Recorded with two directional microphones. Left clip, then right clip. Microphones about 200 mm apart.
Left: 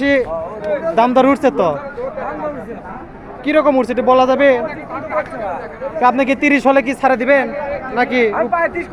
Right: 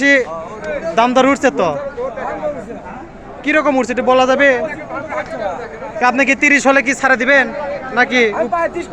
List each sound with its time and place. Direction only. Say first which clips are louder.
0.0 s a man's voice: right 3 dB; 5° left (ahead or behind)
0.6 s a sound: left 2 dB; 45° left (ahead or behind)
0.9 s a man's voice: right 1 dB; 10° left (ahead or behind)
3.4 s a man's voice: left 1 dB; 5° left (ahead or behind)
6.0 s a man's voice: right 1 dB; 10° left (ahead or behind)